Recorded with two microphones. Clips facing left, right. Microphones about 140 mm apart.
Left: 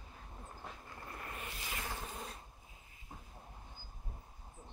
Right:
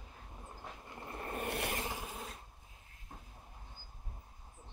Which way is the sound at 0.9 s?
25° right (ahead or behind).